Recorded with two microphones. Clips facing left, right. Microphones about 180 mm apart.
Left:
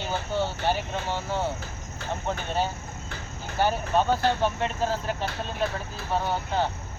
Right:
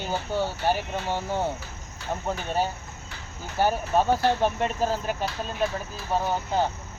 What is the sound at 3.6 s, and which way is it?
Speech, 10° right (ahead or behind).